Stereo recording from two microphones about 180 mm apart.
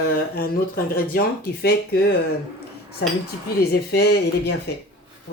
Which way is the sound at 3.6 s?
65° left (ahead or behind).